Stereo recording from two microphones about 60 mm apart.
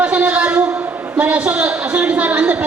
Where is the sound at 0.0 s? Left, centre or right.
Right.